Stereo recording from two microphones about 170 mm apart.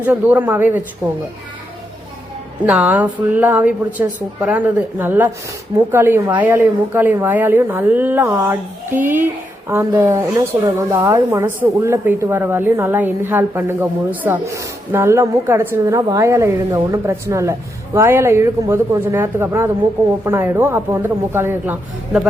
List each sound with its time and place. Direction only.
0.0 s speech: 10° right (ahead or behind)
2.6 s speech: 10° right (ahead or behind)